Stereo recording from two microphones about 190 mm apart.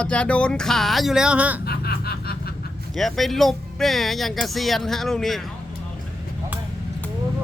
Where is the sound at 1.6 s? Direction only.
55° left (ahead or behind).